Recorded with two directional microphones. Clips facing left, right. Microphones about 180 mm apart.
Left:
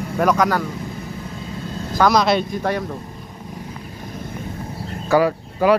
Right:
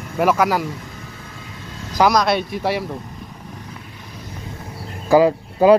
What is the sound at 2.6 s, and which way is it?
Speech, 10° right (ahead or behind).